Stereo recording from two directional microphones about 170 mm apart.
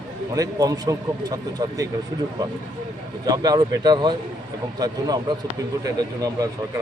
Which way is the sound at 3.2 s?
20° right (ahead or behind).